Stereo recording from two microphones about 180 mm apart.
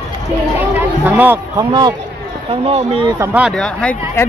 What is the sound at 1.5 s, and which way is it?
Speech, 25° right (ahead or behind).